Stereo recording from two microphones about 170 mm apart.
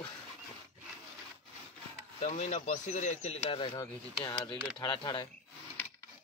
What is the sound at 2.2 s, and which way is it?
Speech, 40° left (ahead or behind).